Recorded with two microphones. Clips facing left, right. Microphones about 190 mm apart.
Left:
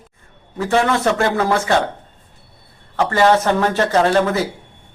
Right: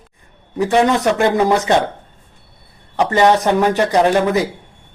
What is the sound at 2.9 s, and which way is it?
Speech, 20° right (ahead or behind).